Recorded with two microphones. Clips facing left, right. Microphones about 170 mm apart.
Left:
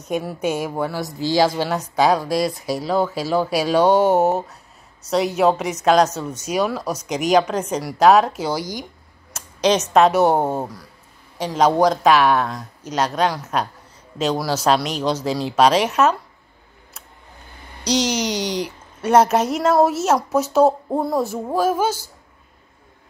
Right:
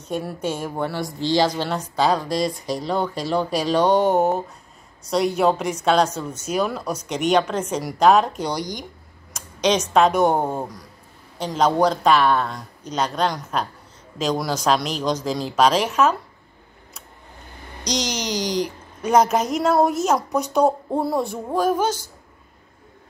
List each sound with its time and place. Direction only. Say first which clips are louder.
0.4 s speech: left 4 dB; 10° left (ahead or behind)
17.8 s speech: left 5 dB; 5° left (ahead or behind)
18.3 s speech: even; 35° right (ahead or behind)
18.9 s speech: left 2 dB; 5° left (ahead or behind)